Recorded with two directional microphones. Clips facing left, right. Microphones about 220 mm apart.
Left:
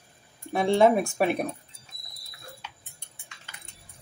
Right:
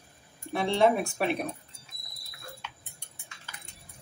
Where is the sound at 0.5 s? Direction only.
45° left (ahead or behind).